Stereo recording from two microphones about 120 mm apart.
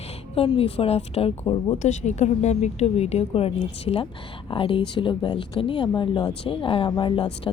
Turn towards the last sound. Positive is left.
turn(degrees=45)  # may be behind; listen again after turning